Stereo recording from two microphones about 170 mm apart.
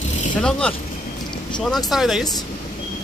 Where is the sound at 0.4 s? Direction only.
5° left (ahead or behind).